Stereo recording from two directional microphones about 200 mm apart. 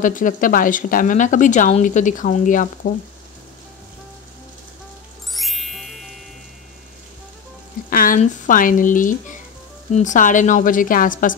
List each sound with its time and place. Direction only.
0.0 s a woman's voice: 40° left (ahead or behind)
5.3 s music: centre (ahead or behind)
7.9 s a woman's voice: 45° left (ahead or behind)